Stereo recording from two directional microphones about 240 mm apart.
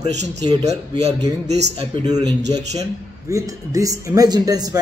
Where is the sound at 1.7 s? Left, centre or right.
Centre.